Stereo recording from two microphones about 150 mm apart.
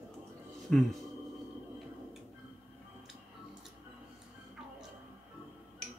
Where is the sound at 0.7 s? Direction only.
5° left (ahead or behind).